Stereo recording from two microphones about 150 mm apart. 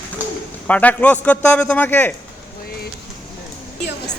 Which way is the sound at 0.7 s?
10° left (ahead or behind).